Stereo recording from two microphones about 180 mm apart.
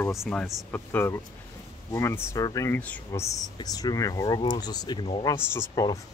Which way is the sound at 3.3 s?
20° left (ahead or behind).